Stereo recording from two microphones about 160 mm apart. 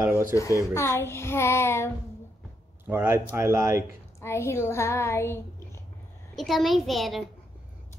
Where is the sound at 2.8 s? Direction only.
15° right (ahead or behind).